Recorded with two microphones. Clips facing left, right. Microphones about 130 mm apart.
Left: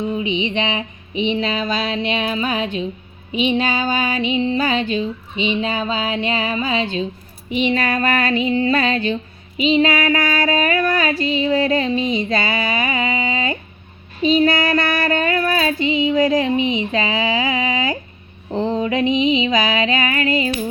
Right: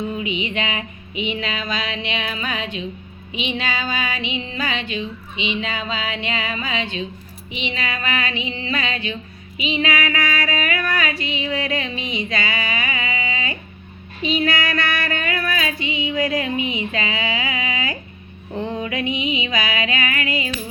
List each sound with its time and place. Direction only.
0.2 s music: 25° left (ahead or behind)
1.1 s speech: 30° left (ahead or behind)
7.5 s a sound: 45° left (ahead or behind)
14.2 s speech: 40° left (ahead or behind)
18.5 s music: 25° left (ahead or behind)
20.0 s speech: 35° left (ahead or behind)